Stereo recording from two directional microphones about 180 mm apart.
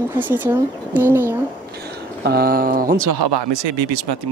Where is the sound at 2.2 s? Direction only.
55° right (ahead or behind).